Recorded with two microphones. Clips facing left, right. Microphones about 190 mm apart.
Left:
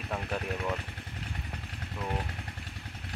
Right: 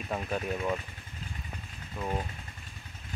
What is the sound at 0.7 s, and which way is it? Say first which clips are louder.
Motorcycle: left 2 dB; 70° left (ahead or behind).